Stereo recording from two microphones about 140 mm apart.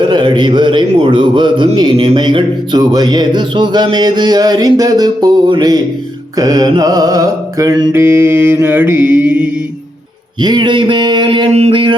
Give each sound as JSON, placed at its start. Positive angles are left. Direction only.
{"t": 0.0, "sound": "a man's voice", "side_deg": -35}
{"t": 6.3, "sound": "mantra", "side_deg": -25}
{"t": 8.0, "sound": "mantra", "side_deg": -15}
{"t": 10.4, "sound": "a man's voice", "side_deg": -35}